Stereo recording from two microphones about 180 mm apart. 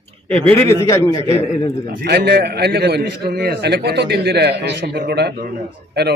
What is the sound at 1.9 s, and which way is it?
A man's voice, 60° right (ahead or behind).